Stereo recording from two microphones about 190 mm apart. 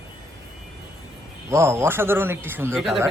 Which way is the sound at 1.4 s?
15° right (ahead or behind).